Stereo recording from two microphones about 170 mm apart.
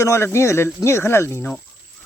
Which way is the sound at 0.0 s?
15° left (ahead or behind).